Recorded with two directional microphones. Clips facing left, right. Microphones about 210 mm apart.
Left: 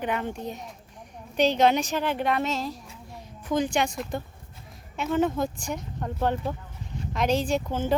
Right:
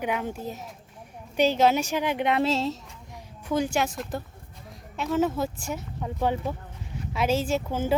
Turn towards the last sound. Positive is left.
turn(degrees=-10)  # may be behind; listen again after turning